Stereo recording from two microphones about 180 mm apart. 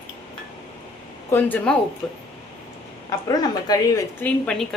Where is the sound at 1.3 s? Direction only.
10° left (ahead or behind).